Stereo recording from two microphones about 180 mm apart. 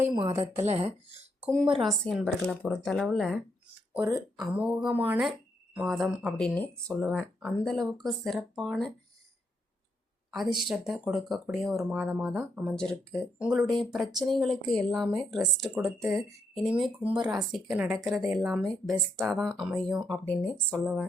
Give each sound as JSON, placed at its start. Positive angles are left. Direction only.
{"t": 0.1, "sound": "a woman's voice", "side_deg": -25}
{"t": 0.7, "sound": "speech", "side_deg": -35}
{"t": 1.6, "sound": "speech", "side_deg": 0}
{"t": 3.9, "sound": "speech", "side_deg": -10}
{"t": 10.3, "sound": "speech", "side_deg": 0}
{"t": 16.0, "sound": "speech", "side_deg": -15}
{"t": 16.6, "sound": "speech", "side_deg": 0}
{"t": 20.8, "sound": "speech", "side_deg": -5}